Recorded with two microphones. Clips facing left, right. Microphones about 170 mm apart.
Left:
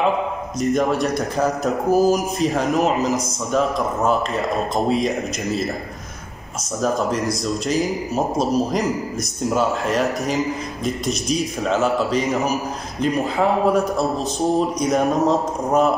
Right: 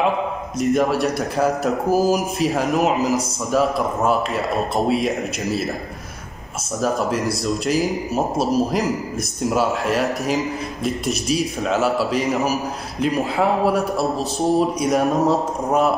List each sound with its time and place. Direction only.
0.6 s speech: 5° right (ahead or behind)
6.8 s speech: centre (ahead or behind)